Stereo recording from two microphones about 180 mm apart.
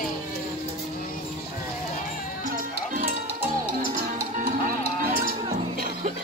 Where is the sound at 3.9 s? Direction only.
50° right (ahead or behind).